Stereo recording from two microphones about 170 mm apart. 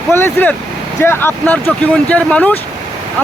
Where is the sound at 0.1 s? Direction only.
10° left (ahead or behind).